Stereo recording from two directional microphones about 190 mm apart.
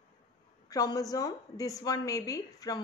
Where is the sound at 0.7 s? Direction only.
20° left (ahead or behind).